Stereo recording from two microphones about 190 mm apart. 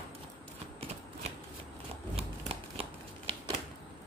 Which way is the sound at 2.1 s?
30° right (ahead or behind).